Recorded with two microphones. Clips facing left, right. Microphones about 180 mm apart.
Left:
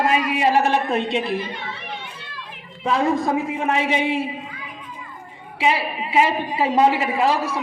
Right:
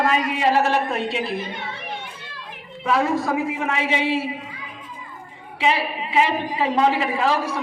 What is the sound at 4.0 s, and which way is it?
Speech, 20° left (ahead or behind).